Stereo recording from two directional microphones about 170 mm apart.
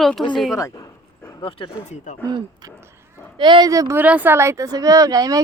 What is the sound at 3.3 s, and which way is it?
Speech, 30° right (ahead or behind).